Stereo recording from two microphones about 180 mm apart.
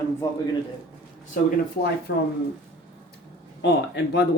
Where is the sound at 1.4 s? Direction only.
50° left (ahead or behind).